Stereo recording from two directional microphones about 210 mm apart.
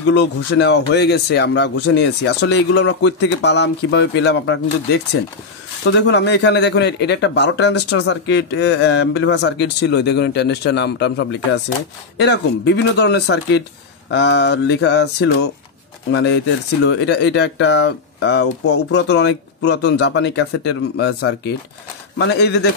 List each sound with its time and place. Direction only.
0.1 s a man's voice: 55° left (ahead or behind)